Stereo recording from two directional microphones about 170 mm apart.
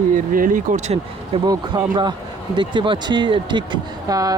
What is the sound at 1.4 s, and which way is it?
Speech, 25° right (ahead or behind).